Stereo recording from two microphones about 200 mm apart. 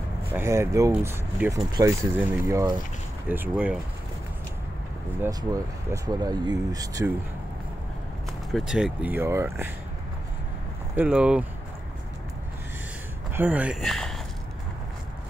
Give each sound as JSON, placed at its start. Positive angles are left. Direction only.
{"t": 0.3, "sound": "speech", "side_deg": -15}
{"t": 5.2, "sound": "speech", "side_deg": -15}
{"t": 8.5, "sound": "speech", "side_deg": 0}
{"t": 11.0, "sound": "speech", "side_deg": -5}
{"t": 13.3, "sound": "speech", "side_deg": -10}